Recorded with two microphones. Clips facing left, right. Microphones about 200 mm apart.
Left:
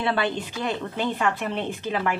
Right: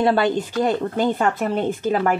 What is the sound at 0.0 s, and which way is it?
Speech, 40° right (ahead or behind).